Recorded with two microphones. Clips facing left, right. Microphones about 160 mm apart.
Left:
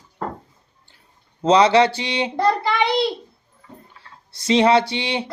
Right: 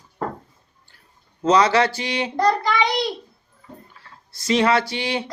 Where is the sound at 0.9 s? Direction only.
25° left (ahead or behind).